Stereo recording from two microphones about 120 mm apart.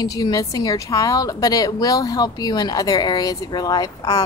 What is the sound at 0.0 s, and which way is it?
A woman's voice, 30° left (ahead or behind).